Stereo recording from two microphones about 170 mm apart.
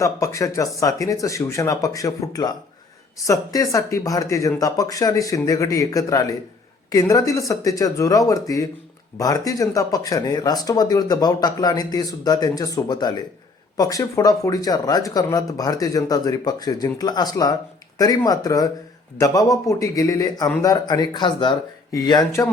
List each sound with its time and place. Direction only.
0.0 s speech: 20° left (ahead or behind)